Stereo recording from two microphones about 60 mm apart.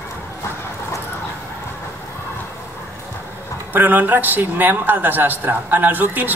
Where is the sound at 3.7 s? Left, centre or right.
Right.